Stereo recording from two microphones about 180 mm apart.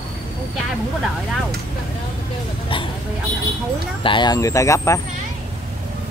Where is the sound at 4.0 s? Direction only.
25° left (ahead or behind).